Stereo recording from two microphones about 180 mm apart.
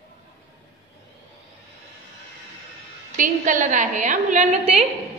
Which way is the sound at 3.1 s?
45° right (ahead or behind).